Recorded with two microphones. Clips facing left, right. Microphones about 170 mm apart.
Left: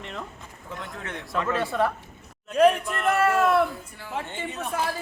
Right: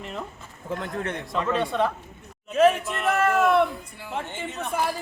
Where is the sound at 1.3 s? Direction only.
10° right (ahead or behind).